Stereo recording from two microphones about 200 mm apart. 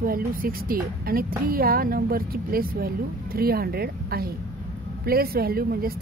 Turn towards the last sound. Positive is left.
turn(degrees=-50)  # may be behind; listen again after turning